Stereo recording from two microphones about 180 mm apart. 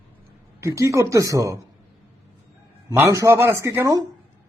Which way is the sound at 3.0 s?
15° right (ahead or behind).